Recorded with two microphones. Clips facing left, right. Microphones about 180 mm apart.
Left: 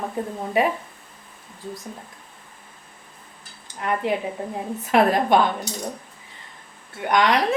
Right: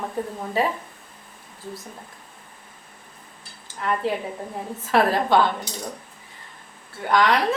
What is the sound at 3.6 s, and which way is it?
A woman's voice, 15° left (ahead or behind).